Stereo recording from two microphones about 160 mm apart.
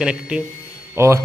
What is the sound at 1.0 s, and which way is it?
Speech, 15° right (ahead or behind).